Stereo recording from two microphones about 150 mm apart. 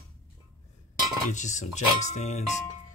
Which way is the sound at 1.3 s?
55° left (ahead or behind).